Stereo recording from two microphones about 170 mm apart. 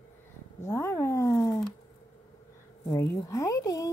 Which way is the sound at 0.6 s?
15° left (ahead or behind).